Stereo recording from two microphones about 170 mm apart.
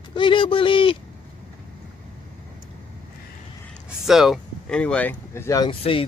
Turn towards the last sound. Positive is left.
turn(degrees=30)  # may be behind; listen again after turning